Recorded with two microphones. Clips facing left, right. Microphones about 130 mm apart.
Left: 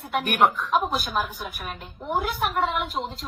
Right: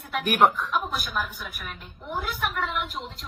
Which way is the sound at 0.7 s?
35° left (ahead or behind).